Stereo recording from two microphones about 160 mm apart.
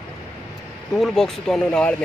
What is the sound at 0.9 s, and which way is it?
Speech, 5° left (ahead or behind).